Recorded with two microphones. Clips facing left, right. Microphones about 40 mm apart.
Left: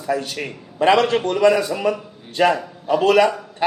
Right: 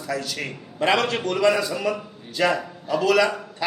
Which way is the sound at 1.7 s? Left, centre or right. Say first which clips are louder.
Left 4 dB; left.